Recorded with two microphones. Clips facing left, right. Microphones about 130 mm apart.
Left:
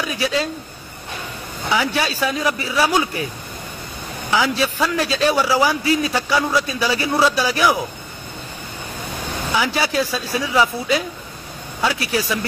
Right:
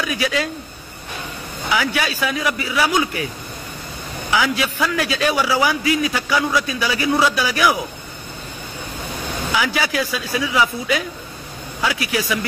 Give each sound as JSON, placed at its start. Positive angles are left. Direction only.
{"t": 0.1, "sound": "speech", "side_deg": 30}
{"t": 1.7, "sound": "speech", "side_deg": 30}
{"t": 4.3, "sound": "a man's voice", "side_deg": 30}
{"t": 9.6, "sound": "speech", "side_deg": 30}